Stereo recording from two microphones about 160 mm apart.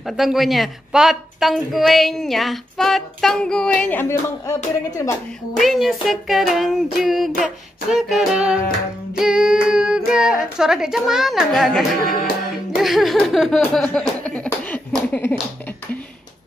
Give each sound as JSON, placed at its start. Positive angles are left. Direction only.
{"t": 0.0, "sound": "a woman's voice", "side_deg": 0}
{"t": 5.6, "sound": "a woman's voice", "side_deg": 0}
{"t": 13.8, "sound": "a sound", "side_deg": 10}